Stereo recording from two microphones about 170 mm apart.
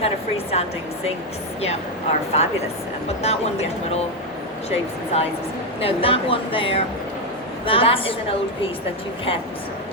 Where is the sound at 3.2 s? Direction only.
40° left (ahead or behind).